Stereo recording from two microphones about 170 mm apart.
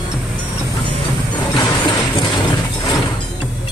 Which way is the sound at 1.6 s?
25° left (ahead or behind).